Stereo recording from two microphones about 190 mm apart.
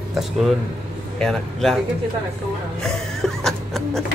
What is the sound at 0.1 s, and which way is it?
Speech, centre (ahead or behind).